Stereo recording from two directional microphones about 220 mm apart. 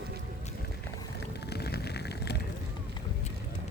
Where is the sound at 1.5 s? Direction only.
45° left (ahead or behind).